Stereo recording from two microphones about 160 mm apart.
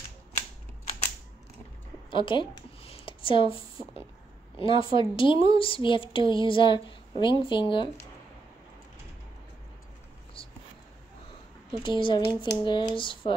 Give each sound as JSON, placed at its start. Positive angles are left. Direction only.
{"t": 2.0, "sound": "a sound", "side_deg": 30}
{"t": 4.6, "sound": "speech", "side_deg": 35}
{"t": 11.7, "sound": "a woman's voice", "side_deg": 30}